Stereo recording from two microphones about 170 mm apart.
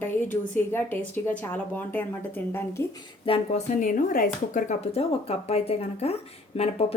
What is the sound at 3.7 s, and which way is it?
Speech, 55° left (ahead or behind).